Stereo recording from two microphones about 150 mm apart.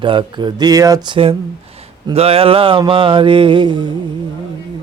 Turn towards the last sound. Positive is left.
turn(degrees=-30)  # may be behind; listen again after turning